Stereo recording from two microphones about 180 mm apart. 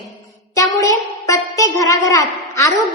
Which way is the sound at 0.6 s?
15° left (ahead or behind).